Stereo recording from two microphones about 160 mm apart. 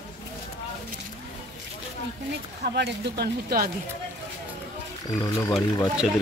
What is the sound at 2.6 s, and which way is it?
Speech, 90° right.